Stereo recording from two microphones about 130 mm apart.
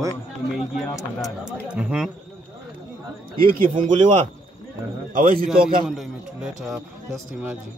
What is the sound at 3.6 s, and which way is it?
Speech, 80° right.